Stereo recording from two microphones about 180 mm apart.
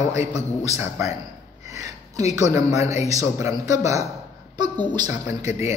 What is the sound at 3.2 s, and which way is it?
Speech, 15° right (ahead or behind).